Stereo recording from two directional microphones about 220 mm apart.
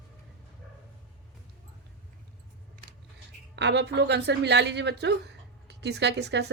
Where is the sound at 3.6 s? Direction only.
50° right (ahead or behind).